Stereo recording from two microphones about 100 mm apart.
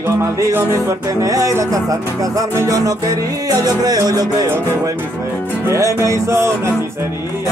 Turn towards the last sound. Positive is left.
turn(degrees=-30)  # may be behind; listen again after turning